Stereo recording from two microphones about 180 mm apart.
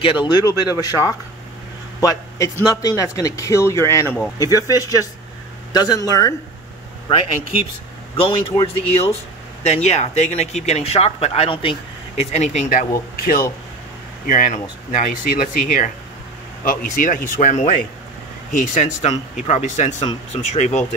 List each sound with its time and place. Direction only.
0.0 s a man's voice: 25° left (ahead or behind)
8.3 s speech: 30° left (ahead or behind)